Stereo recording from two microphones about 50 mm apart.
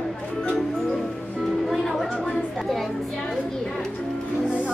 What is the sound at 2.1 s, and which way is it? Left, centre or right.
Chatter, centre.